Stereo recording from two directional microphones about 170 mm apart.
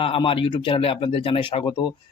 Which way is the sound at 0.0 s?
30° left (ahead or behind).